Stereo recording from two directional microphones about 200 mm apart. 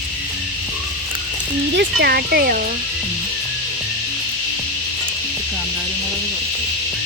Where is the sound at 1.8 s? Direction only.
55° right (ahead or behind).